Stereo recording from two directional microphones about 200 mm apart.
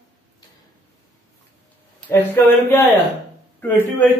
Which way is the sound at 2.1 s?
10° left (ahead or behind).